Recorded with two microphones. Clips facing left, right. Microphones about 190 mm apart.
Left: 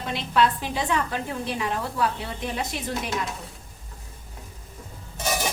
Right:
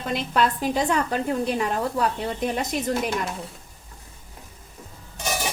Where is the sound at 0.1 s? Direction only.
45° right (ahead or behind).